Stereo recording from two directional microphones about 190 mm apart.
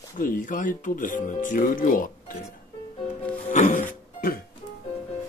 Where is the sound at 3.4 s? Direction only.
40° left (ahead or behind).